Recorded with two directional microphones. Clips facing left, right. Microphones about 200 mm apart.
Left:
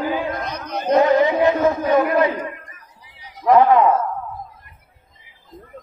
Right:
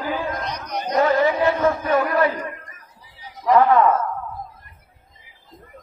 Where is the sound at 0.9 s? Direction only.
20° left (ahead or behind).